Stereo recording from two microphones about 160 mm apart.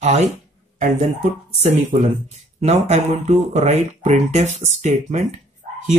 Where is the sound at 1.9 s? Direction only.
50° right (ahead or behind).